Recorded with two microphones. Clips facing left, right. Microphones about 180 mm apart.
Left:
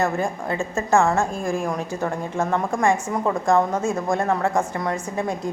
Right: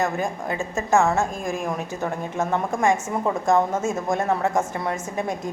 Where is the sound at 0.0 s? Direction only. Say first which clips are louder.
Left 2 dB; 15° right (ahead or behind).